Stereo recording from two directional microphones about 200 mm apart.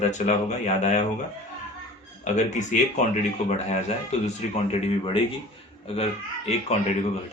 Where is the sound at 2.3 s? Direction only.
35° left (ahead or behind).